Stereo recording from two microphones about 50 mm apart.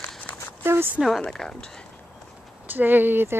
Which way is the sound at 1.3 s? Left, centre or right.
Centre.